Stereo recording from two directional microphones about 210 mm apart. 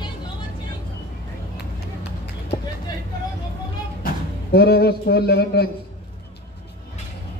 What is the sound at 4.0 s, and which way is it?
A man's voice, 50° left (ahead or behind).